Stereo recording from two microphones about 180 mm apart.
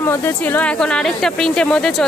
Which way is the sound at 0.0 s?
10° left (ahead or behind).